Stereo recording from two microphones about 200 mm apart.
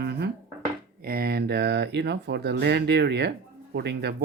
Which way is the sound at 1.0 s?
50° right (ahead or behind).